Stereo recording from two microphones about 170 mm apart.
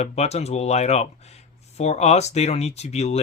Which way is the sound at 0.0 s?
40° left (ahead or behind).